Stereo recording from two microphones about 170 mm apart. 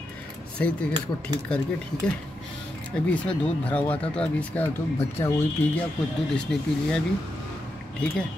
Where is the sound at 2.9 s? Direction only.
5° left (ahead or behind).